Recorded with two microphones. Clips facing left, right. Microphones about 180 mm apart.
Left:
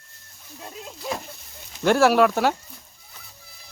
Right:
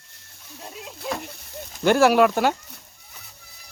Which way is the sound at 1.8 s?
Centre (ahead or behind).